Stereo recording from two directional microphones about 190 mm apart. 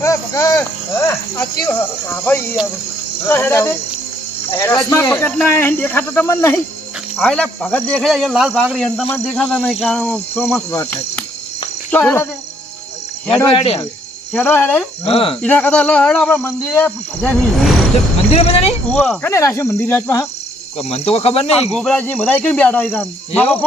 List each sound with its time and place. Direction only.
0.0 s speech: 15° left (ahead or behind)
15.0 s cricket: 30° left (ahead or behind)
15.4 s speech: 10° left (ahead or behind)
18.3 s speech: 30° left (ahead or behind)
18.9 s speech: 5° left (ahead or behind)
20.7 s speech: 30° left (ahead or behind)
21.8 s speech: 5° left (ahead or behind)